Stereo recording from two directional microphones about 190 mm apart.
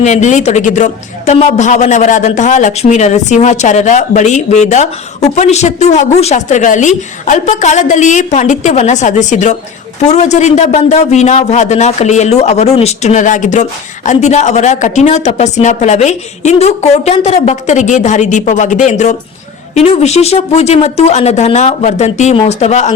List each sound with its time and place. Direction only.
0.0 s speech: 40° left (ahead or behind)